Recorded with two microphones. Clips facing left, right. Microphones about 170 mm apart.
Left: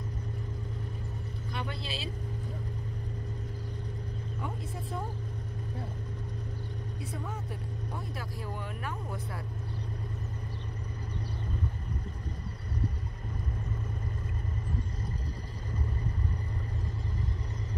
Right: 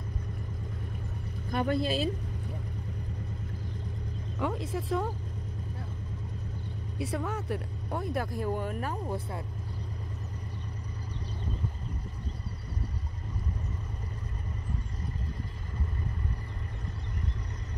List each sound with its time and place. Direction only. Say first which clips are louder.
1.5 s speech: right 11 dB; 45° right (ahead or behind)
4.4 s speech: right 9 dB; 90° right
7.0 s speech: right 9 dB; 80° right; by 8.9 s 45° right (ahead or behind)